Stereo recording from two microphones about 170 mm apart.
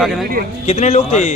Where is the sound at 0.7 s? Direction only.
40° left (ahead or behind).